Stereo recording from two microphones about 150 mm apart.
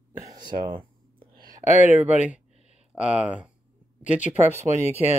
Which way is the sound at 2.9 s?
5° right (ahead or behind).